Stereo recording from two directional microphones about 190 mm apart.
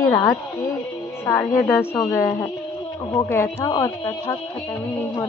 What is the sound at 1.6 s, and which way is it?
Speech, 10° left (ahead or behind).